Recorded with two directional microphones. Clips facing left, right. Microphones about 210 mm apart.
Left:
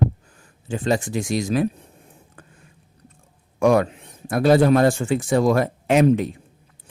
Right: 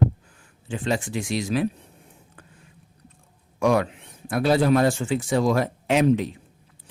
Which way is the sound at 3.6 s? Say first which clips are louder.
Left 4 dB; 45° left (ahead or behind).